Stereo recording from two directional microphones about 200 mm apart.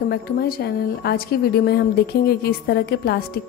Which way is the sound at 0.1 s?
50° left (ahead or behind).